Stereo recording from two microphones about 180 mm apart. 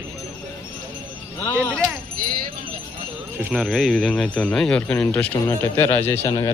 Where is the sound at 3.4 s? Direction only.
5° right (ahead or behind).